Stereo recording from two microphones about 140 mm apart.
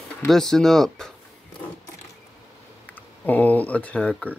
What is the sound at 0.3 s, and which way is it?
Speech, 5° left (ahead or behind).